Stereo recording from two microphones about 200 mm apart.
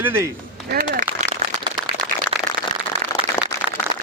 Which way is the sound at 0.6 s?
50° right (ahead or behind).